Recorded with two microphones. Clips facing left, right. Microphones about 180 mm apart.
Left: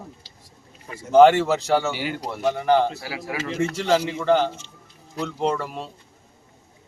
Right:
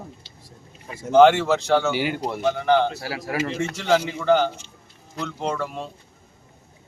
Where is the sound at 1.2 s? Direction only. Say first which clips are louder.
Left 1 dB; centre (ahead or behind).